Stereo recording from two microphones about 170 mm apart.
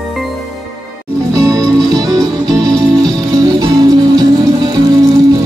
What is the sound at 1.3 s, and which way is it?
Music, 20° right (ahead or behind).